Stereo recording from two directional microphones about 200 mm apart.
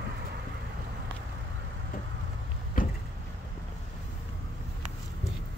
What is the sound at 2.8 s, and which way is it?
Vehicle, 45° left (ahead or behind).